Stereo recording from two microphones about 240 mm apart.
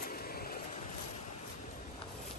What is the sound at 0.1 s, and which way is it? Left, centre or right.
Vehicle, left.